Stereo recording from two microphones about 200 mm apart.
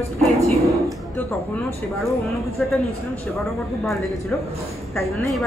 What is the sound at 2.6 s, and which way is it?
Speech, 5° left (ahead or behind).